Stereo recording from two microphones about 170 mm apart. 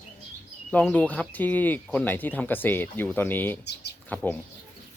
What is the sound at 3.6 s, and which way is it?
Speech, 80° left.